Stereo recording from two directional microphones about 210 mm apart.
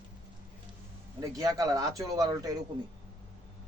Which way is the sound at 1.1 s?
15° right (ahead or behind).